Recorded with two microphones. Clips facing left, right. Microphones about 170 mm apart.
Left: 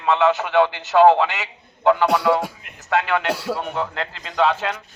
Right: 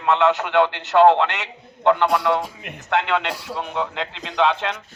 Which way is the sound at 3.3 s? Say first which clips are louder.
Left 7 dB; 80° left.